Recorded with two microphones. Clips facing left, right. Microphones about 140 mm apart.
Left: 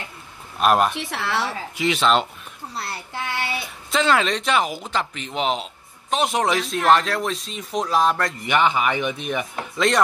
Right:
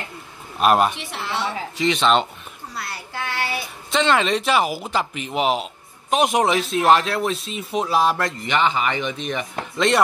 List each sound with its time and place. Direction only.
0.6 s speech: centre (ahead or behind)
0.9 s a woman's voice: 90° left
1.8 s speech: 5° left (ahead or behind)
2.7 s a sound: 30° left (ahead or behind)
3.9 s speech: centre (ahead or behind)
6.4 s speech: centre (ahead or behind)
8.5 s speech: 10° left (ahead or behind)